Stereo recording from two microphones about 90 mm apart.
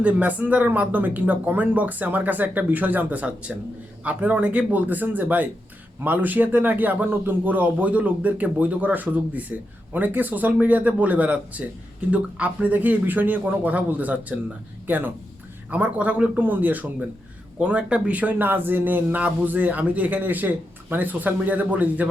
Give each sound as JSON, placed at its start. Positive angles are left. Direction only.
{"t": 0.0, "sound": "a man's voice", "side_deg": -15}